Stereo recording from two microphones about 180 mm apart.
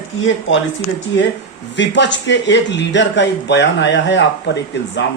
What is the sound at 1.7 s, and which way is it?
Speech, 80° left.